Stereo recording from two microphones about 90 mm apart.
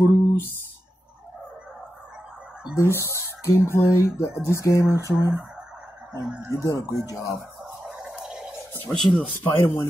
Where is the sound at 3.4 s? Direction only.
30° left (ahead or behind).